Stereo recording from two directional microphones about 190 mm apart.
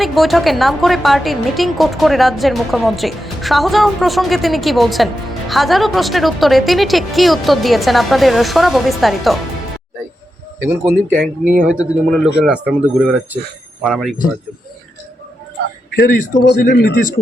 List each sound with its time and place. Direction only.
0.0 s a woman's voice: centre (ahead or behind)
10.6 s a woman's voice: 10° right (ahead or behind)
15.9 s speech: 50° left (ahead or behind)
16.7 s speech: 55° left (ahead or behind)